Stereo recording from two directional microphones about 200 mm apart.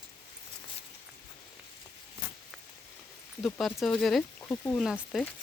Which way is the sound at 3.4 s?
Centre (ahead or behind).